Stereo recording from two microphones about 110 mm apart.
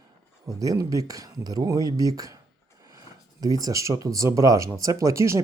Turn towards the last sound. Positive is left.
turn(degrees=-25)  # may be behind; listen again after turning